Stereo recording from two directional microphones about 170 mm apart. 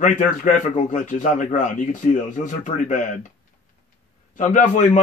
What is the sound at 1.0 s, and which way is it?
A man's voice, 50° left (ahead or behind).